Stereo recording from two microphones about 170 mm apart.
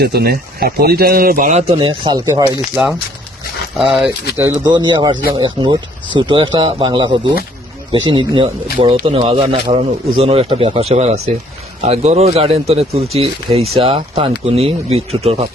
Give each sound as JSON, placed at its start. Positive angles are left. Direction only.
{"t": 0.0, "sound": "speech", "side_deg": -70}
{"t": 2.2, "sound": "speech", "side_deg": -15}
{"t": 3.8, "sound": "speech", "side_deg": -5}
{"t": 4.6, "sound": "speech", "side_deg": -25}